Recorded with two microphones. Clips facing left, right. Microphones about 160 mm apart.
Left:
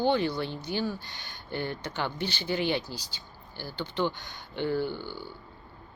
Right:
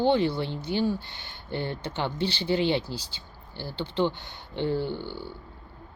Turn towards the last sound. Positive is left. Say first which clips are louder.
# right 1 dB
turn(degrees=-25)  # may be behind; listen again after turning